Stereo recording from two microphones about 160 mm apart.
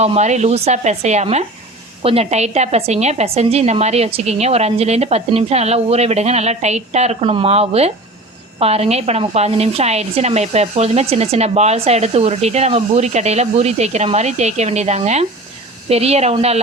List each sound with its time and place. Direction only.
0.0 s a woman's voice: 45° right (ahead or behind)